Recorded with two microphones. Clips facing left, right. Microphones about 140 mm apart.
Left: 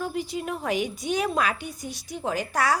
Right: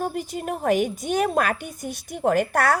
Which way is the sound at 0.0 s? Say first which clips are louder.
Right 2 dB; 50° right (ahead or behind).